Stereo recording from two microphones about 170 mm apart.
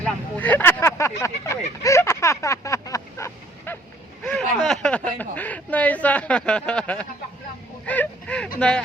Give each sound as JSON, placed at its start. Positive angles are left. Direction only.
{"t": 0.0, "sound": "vehicle", "side_deg": 10}
{"t": 4.2, "sound": "a sound", "side_deg": 5}
{"t": 8.5, "sound": "speech", "side_deg": 5}